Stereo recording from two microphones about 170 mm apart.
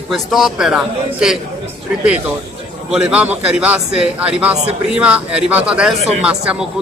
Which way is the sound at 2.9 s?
5° right (ahead or behind).